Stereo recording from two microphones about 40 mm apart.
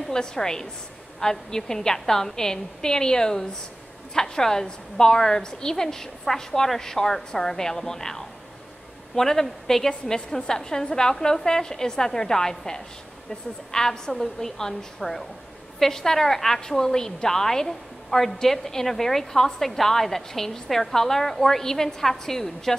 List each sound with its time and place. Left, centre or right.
0.1 s a woman's voice: centre